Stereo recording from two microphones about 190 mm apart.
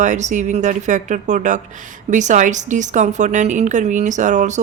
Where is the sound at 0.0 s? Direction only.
40° right (ahead or behind).